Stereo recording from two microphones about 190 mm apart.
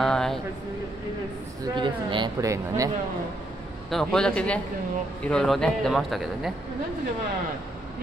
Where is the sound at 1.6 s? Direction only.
25° right (ahead or behind).